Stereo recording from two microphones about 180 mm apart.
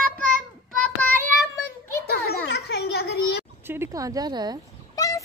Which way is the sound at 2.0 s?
65° left (ahead or behind).